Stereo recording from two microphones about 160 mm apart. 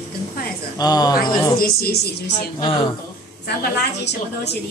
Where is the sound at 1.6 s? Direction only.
70° left (ahead or behind).